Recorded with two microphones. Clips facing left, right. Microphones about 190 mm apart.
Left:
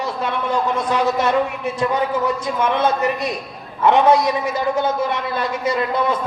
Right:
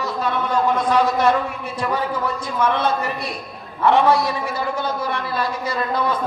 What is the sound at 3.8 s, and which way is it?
A man's voice, 20° left (ahead or behind).